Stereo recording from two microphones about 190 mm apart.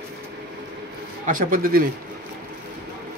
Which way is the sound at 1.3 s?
45° right (ahead or behind).